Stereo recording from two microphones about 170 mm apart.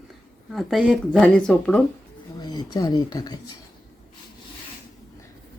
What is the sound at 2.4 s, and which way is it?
Speech, 25° left (ahead or behind).